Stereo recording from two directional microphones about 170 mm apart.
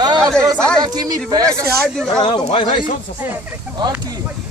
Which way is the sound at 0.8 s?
25° right (ahead or behind).